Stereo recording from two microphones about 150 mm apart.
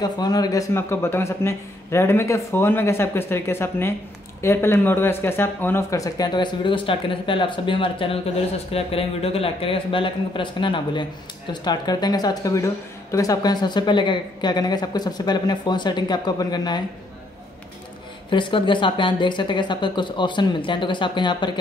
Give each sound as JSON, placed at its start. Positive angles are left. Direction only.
{"t": 0.0, "sound": "a man's voice", "side_deg": 25}
{"t": 18.3, "sound": "speech", "side_deg": 35}